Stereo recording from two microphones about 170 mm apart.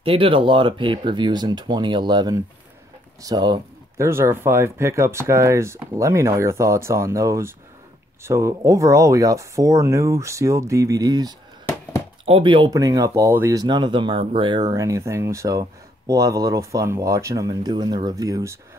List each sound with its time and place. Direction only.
0.0 s speech: 30° right (ahead or behind)